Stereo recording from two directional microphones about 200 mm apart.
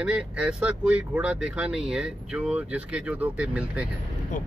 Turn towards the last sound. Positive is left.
turn(degrees=-5)  # may be behind; listen again after turning